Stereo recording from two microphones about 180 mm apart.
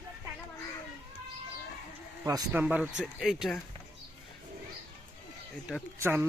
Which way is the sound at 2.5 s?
10° right (ahead or behind).